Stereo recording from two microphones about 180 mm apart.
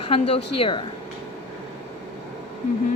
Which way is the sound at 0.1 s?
30° left (ahead or behind).